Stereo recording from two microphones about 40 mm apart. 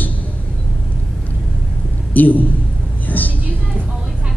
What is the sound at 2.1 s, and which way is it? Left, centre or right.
Speech, left.